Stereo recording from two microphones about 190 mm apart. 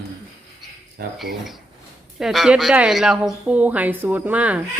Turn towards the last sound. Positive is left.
turn(degrees=-10)  # may be behind; listen again after turning